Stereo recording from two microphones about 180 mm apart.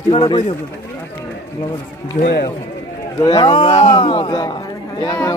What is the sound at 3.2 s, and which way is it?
A man's voice, 20° left (ahead or behind).